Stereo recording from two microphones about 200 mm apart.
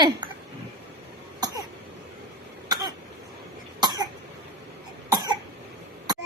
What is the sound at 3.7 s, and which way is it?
Cough, 20° right (ahead or behind).